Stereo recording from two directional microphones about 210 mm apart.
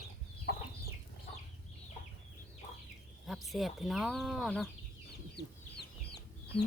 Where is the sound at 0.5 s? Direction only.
50° left (ahead or behind).